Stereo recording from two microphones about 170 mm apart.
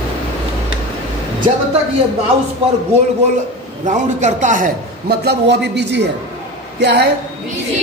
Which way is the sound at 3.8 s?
45° right (ahead or behind).